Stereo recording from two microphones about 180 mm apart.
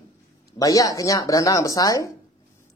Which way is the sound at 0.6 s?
20° left (ahead or behind).